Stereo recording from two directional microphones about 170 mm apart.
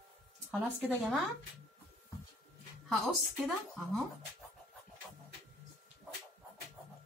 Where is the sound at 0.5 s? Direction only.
Centre (ahead or behind).